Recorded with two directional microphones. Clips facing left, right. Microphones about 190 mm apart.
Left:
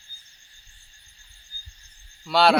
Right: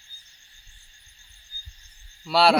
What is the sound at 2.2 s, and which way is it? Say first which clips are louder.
Speech: even; 5° right (ahead or behind).